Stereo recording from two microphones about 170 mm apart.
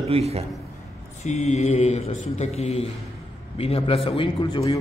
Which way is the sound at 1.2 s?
40° left (ahead or behind).